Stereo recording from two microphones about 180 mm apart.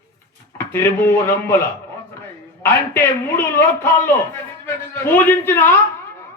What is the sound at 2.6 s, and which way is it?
A man's voice, 10° left (ahead or behind).